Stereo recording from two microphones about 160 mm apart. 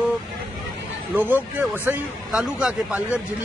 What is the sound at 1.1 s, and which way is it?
A man's voice, 10° right (ahead or behind).